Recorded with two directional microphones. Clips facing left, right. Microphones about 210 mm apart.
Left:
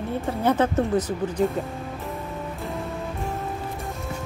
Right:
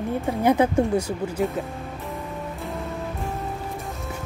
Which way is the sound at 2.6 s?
Centre (ahead or behind).